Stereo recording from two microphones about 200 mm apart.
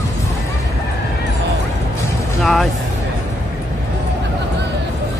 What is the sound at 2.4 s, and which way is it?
Vehicle, centre (ahead or behind).